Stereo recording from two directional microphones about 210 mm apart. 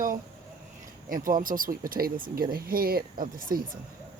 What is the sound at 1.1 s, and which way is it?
Speech, 40° right (ahead or behind).